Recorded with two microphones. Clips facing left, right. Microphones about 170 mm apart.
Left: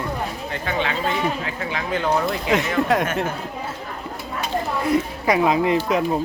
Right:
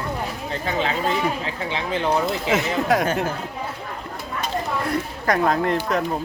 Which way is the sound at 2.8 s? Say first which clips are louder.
Left 1 dB; centre (ahead or behind).